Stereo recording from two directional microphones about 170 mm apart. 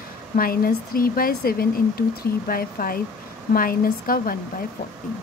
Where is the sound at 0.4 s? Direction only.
60° left (ahead or behind).